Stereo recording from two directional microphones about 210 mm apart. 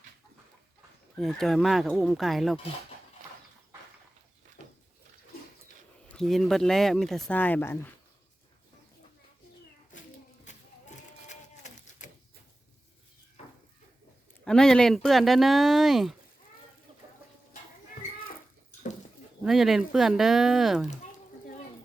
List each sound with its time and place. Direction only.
1.1 s speech: centre (ahead or behind)
6.1 s speech: centre (ahead or behind)
10.9 s printer: 35° left (ahead or behind)
14.4 s speech: 5° left (ahead or behind)
19.4 s speech: centre (ahead or behind)
20.8 s a sound: 35° left (ahead or behind)